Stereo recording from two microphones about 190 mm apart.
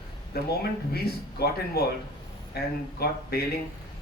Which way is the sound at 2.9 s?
55° left (ahead or behind).